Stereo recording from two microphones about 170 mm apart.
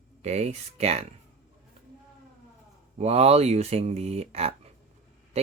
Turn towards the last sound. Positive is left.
turn(degrees=-35)  # may be behind; listen again after turning